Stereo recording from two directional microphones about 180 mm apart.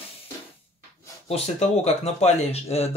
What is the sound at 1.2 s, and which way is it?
Speech, 35° left (ahead or behind).